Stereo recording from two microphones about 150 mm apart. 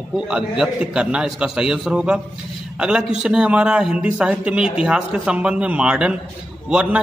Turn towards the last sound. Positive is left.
turn(degrees=-5)  # may be behind; listen again after turning